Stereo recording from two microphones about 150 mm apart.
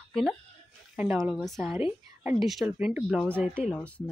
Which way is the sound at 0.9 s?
10° right (ahead or behind).